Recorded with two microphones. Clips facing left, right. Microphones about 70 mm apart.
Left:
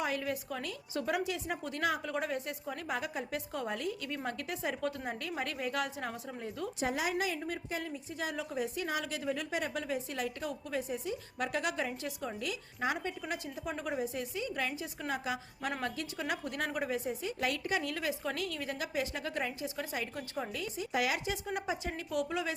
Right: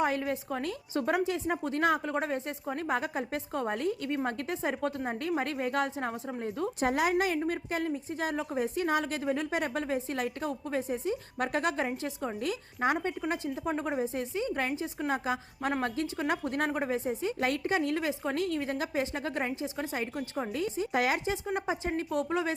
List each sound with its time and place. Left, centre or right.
0.0 s a woman's voice: right
6.7 s a woman's voice: right
12.0 s a woman's voice: right